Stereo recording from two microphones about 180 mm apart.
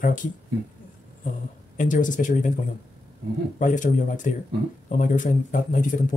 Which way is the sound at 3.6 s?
45° left (ahead or behind).